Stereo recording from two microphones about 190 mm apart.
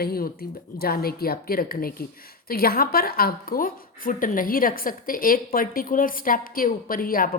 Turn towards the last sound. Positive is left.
turn(degrees=50)  # may be behind; listen again after turning